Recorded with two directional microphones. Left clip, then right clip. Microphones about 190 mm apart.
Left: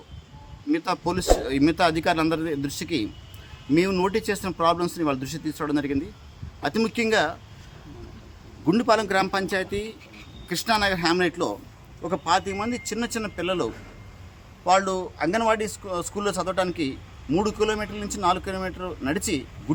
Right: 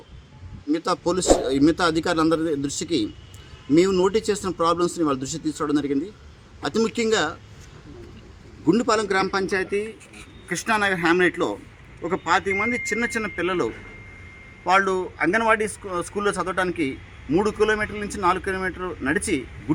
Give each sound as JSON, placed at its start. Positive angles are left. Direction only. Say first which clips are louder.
{"t": 0.7, "sound": "speech", "louder": "right 2 dB", "side_deg": 15}
{"t": 8.6, "sound": "speech", "louder": "right 1 dB", "side_deg": 15}